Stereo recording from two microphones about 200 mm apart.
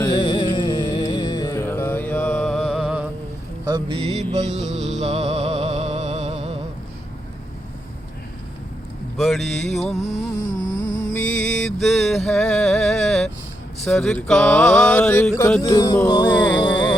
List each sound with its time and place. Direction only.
0.0 s music: 20° left (ahead or behind); by 3.1 s 5° right (ahead or behind)
3.7 s mantra: 25° right (ahead or behind)
4.9 s music: 35° right (ahead or behind)
9.1 s mantra: centre (ahead or behind)
9.9 s music: 35° left (ahead or behind)
11.1 s music: 5° left (ahead or behind)
13.8 s a sound: 5° left (ahead or behind)
15.4 s music: 10° left (ahead or behind)
15.7 s music: 20° left (ahead or behind)